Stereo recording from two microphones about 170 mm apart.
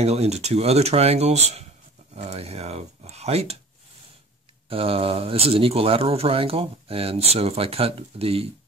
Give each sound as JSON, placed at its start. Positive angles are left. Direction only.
{"t": 0.0, "sound": "speech", "side_deg": -40}
{"t": 4.6, "sound": "speech", "side_deg": -35}